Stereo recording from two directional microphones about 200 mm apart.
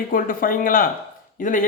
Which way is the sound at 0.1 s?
45° left (ahead or behind).